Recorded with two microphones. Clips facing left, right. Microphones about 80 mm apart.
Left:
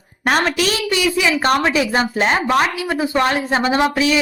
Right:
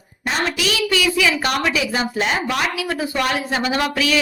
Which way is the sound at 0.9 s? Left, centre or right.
Left.